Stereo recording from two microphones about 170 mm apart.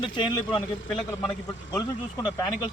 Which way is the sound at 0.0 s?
25° left (ahead or behind).